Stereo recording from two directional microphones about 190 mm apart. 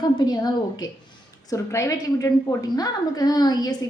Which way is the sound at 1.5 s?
15° left (ahead or behind).